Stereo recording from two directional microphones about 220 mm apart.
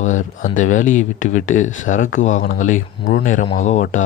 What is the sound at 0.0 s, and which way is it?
Speech, 35° left (ahead or behind).